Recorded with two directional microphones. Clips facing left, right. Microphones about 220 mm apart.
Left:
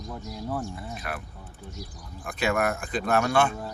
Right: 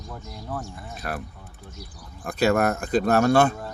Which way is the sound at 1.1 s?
40° right (ahead or behind).